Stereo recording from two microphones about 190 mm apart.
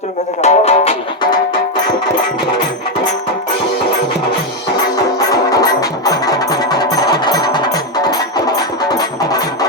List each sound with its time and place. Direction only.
0.4 s music: 35° left (ahead or behind)
5.3 s music: 20° left (ahead or behind)